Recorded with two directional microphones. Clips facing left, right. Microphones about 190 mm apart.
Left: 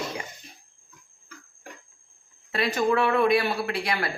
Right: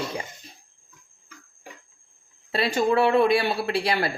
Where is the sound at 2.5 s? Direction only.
30° right (ahead or behind).